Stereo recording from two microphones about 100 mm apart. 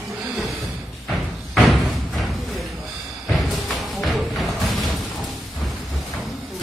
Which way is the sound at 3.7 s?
Centre (ahead or behind).